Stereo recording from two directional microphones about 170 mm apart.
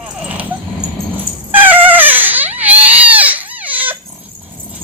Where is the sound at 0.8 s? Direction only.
40° right (ahead or behind).